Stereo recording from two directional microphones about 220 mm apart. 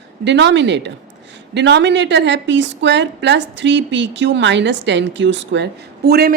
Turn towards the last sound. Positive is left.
turn(degrees=-45)  # may be behind; listen again after turning